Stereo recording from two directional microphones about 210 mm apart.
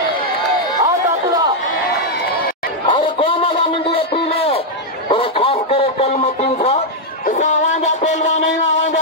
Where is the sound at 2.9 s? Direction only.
25° left (ahead or behind).